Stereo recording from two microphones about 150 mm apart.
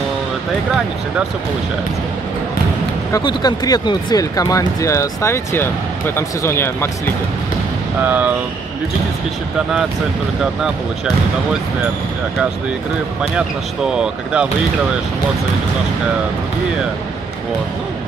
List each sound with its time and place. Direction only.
3.1 s speech: 30° left (ahead or behind)
8.0 s speech: 10° right (ahead or behind)
13.8 s speech: 5° right (ahead or behind)